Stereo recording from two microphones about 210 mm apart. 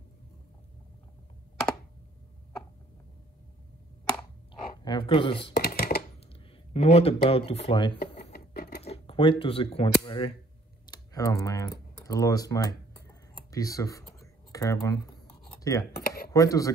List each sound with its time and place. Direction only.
4.8 s speech: 25° left (ahead or behind)
5.5 s a sound: 50° left (ahead or behind)
6.7 s speech: 30° left (ahead or behind)
8.2 s sewing machine: 50° left (ahead or behind)
8.8 s speech: 25° left (ahead or behind)
12.0 s tick-tock: 15° left (ahead or behind)
15.6 s a sound: 15° left (ahead or behind)
16.3 s speech: 15° left (ahead or behind)